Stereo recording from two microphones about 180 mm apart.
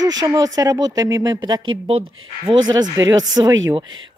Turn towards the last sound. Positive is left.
turn(degrees=-25)  # may be behind; listen again after turning